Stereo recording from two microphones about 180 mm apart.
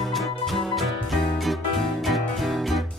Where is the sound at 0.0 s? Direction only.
Centre (ahead or behind).